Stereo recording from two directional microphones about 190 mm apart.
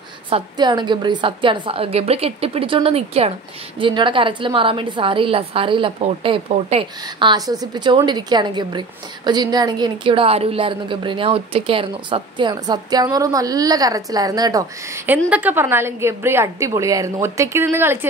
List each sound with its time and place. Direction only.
0.3 s a woman's voice: 25° right (ahead or behind)